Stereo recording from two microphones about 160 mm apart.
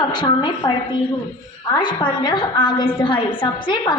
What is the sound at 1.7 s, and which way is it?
A woman's voice, 30° left (ahead or behind).